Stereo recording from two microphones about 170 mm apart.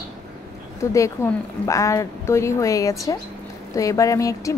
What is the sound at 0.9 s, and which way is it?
A woman's voice, 20° left (ahead or behind).